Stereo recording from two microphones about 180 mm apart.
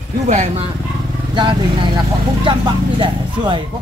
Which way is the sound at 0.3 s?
40° right (ahead or behind).